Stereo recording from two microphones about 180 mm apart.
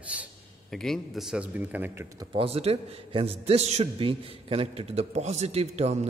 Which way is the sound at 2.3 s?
30° right (ahead or behind).